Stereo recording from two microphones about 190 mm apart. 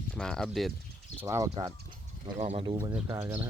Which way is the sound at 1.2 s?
15° right (ahead or behind).